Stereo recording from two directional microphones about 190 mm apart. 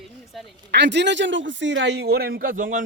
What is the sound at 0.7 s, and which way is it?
A man's voice, 65° right (ahead or behind).